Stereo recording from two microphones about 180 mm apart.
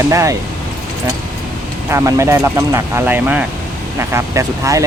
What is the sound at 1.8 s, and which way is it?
Speech, 15° right (ahead or behind).